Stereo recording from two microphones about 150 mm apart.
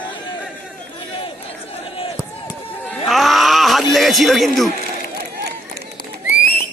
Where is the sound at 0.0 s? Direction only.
35° left (ahead or behind).